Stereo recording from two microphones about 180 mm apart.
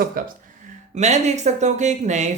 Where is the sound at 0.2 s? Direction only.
55° right (ahead or behind).